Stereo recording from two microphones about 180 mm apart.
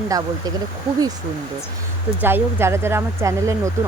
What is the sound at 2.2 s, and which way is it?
Speech, 10° right (ahead or behind).